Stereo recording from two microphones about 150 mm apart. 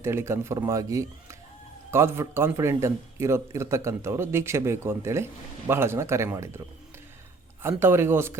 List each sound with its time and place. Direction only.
0.0 s a man's voice: 15° right (ahead or behind)
7.6 s a man's voice: 15° right (ahead or behind)